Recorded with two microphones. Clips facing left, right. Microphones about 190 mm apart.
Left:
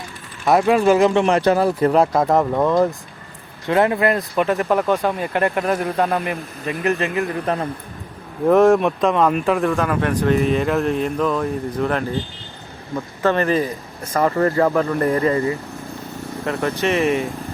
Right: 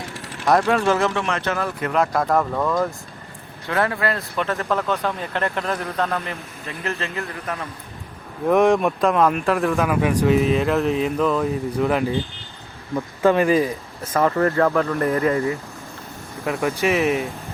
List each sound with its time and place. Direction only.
0.4 s speech: 5° left (ahead or behind)
1.2 s speech: 35° left (ahead or behind); by 7.1 s 15° left (ahead or behind)
7.4 s a man's voice: 30° left (ahead or behind)
8.6 s speech: centre (ahead or behind)
13.2 s speech: 5° right (ahead or behind)
14.1 s speech: 5° left (ahead or behind)